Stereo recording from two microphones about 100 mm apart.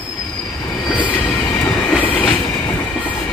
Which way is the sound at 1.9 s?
15° left (ahead or behind).